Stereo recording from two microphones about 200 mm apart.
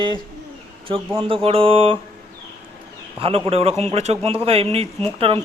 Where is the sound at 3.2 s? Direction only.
30° right (ahead or behind).